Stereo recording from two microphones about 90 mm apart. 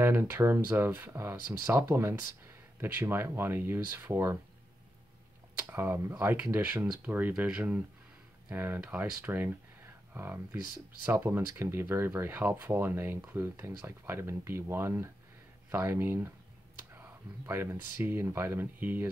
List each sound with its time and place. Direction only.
0.0 s speech: 25° right (ahead or behind)
5.6 s speech: 25° right (ahead or behind)
17.5 s speech: 25° right (ahead or behind)